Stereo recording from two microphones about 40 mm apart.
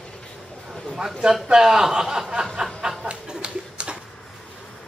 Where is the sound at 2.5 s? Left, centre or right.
Centre.